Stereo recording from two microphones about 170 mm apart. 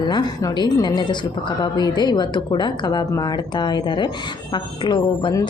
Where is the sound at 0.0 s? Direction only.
25° left (ahead or behind).